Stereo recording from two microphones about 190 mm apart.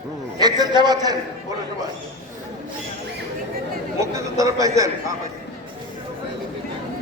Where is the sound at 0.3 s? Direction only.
20° right (ahead or behind).